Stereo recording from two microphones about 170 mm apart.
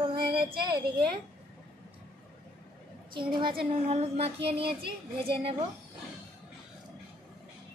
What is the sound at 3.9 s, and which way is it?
A child's voice, 40° right (ahead or behind).